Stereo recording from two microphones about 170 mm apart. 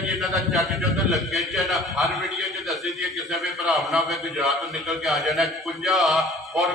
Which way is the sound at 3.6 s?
Centre (ahead or behind).